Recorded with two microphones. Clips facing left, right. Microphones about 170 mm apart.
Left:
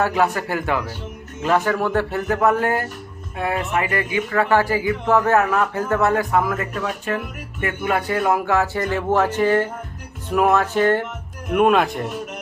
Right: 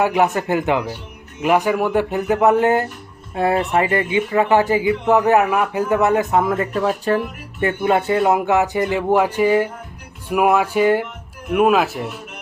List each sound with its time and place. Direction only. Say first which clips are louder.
0.0 s speech: right 3 dB; 20° right (ahead or behind)
3.3 s speech: right 5 dB; 30° right (ahead or behind); by 12.1 s 5° right (ahead or behind)